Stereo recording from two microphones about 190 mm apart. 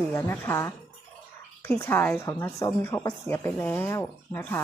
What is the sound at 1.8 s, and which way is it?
A woman's voice, 10° left (ahead or behind).